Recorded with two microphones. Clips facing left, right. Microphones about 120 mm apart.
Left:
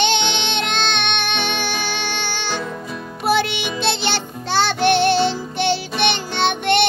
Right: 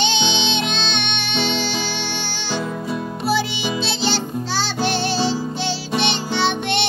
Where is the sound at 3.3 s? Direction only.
60° left (ahead or behind).